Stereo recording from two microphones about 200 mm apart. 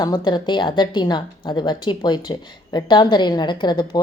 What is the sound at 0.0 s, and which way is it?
A woman's voice, 20° left (ahead or behind).